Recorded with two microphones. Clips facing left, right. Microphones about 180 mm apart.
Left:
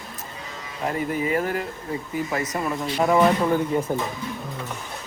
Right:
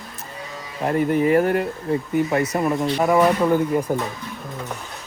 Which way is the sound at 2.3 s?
25° right (ahead or behind).